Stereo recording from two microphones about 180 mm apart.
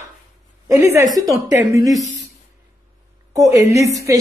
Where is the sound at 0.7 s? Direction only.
15° right (ahead or behind).